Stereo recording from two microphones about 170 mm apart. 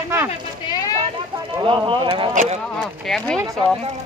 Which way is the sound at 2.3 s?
45° right (ahead or behind).